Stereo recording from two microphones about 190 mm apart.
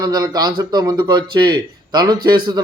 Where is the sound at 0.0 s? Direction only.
20° right (ahead or behind).